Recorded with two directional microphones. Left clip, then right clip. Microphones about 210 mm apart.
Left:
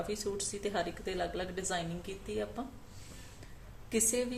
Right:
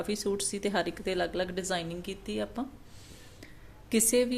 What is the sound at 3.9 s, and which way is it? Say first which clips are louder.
Speech: right 6 dB; 45° right (ahead or behind).